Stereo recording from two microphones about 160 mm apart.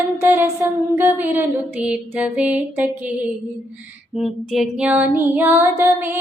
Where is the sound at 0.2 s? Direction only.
15° right (ahead or behind).